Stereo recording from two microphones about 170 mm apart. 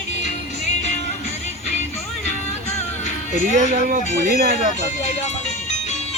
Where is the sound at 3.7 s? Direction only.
50° right (ahead or behind).